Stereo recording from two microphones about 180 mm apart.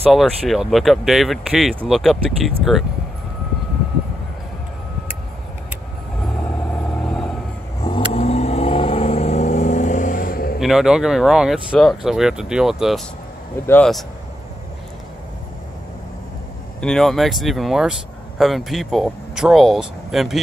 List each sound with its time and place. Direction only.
0.0 s speech: centre (ahead or behind)
7.0 s vehicle: 5° left (ahead or behind)
8.1 s vehicle: 35° left (ahead or behind); by 10.6 s 55° left (ahead or behind)
10.6 s speech: centre (ahead or behind)
16.8 s speech: centre (ahead or behind)